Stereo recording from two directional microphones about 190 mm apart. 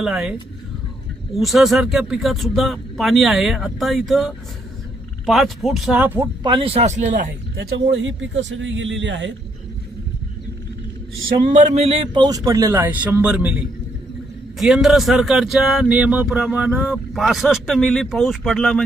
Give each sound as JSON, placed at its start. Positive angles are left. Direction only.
{"t": 0.0, "sound": "speech", "side_deg": 0}
{"t": 6.4, "sound": "a man's voice", "side_deg": -25}
{"t": 7.6, "sound": "a man's voice", "side_deg": -65}
{"t": 11.1, "sound": "speech", "side_deg": -90}
{"t": 11.4, "sound": "a man's voice", "side_deg": -40}